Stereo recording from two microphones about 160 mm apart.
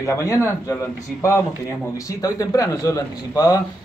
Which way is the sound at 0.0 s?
20° left (ahead or behind).